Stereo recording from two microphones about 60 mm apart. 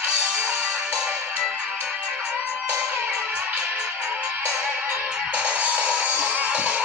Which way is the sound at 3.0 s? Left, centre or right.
Right.